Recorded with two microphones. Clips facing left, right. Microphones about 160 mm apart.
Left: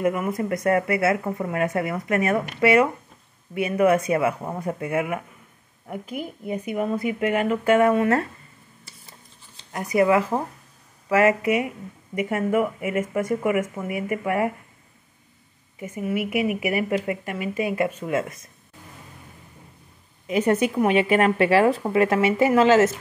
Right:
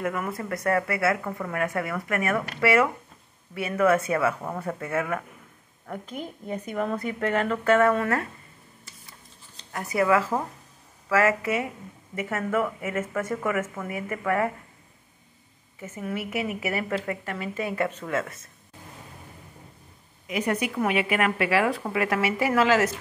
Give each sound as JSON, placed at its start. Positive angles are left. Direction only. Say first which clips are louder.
{"t": 0.0, "sound": "a woman's voice", "louder": "left 6 dB", "side_deg": 20}
{"t": 9.7, "sound": "a woman's voice", "louder": "left 3 dB", "side_deg": 20}
{"t": 15.8, "sound": "a woman's voice", "louder": "left 6 dB", "side_deg": 15}
{"t": 20.2, "sound": "speech", "louder": "left 6 dB", "side_deg": 30}